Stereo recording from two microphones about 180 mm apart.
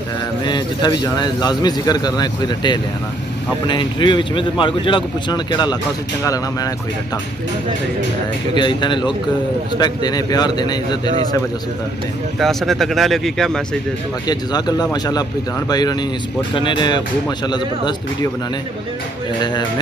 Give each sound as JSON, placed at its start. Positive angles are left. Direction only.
{"t": 0.5, "sound": "a man's voice", "side_deg": 25}
{"t": 8.5, "sound": "a man's voice", "side_deg": 25}
{"t": 12.4, "sound": "speech", "side_deg": 0}
{"t": 14.2, "sound": "a man's voice", "side_deg": 20}